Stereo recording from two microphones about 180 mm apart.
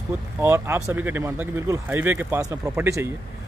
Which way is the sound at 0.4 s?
15° right (ahead or behind).